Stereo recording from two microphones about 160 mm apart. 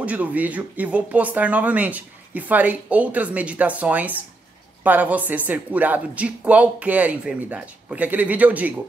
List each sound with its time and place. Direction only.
0.0 s speech: 10° right (ahead or behind)